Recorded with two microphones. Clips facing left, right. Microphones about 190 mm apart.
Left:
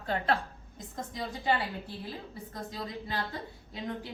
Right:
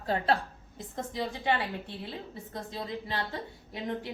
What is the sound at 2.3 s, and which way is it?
Speech, 25° right (ahead or behind).